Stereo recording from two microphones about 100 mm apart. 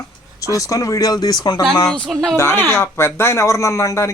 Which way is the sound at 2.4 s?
25° left (ahead or behind).